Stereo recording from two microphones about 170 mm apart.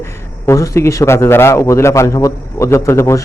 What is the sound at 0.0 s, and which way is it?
A man's voice, 15° left (ahead or behind).